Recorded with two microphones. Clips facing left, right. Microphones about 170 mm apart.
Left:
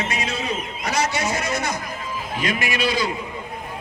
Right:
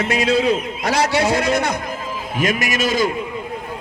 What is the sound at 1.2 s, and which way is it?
Speech, 65° right (ahead or behind).